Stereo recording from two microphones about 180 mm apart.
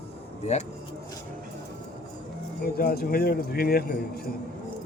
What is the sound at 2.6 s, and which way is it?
Speech, 55° left (ahead or behind).